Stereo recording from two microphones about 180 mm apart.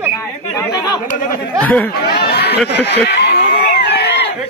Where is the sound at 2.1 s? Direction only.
65° left (ahead or behind).